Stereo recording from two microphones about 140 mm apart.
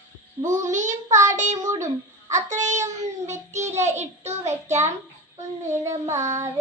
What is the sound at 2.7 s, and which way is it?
Child singing, 60° right (ahead or behind).